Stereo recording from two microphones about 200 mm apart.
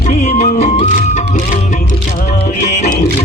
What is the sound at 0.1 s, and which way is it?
Music, 35° left (ahead or behind).